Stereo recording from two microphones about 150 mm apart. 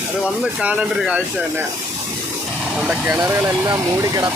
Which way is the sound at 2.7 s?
5° right (ahead or behind).